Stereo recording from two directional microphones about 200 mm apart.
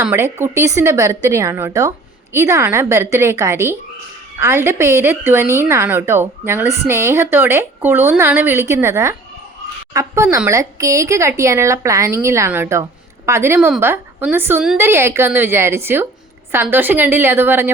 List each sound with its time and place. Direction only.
0.0 s a woman's voice: 15° right (ahead or behind)